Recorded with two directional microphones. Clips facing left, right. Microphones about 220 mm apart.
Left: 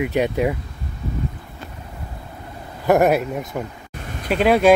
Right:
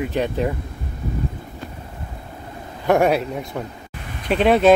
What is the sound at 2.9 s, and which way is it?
Speech, 5° left (ahead or behind).